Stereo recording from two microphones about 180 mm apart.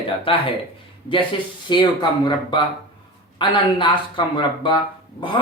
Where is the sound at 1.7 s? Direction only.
25° left (ahead or behind).